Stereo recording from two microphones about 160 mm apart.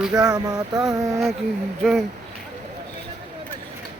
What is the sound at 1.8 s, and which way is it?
Speech, centre (ahead or behind).